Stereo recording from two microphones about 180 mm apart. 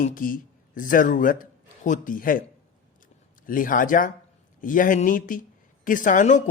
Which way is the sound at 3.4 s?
50° left (ahead or behind).